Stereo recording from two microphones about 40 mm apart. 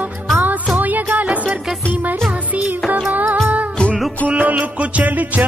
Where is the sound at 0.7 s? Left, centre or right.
Right.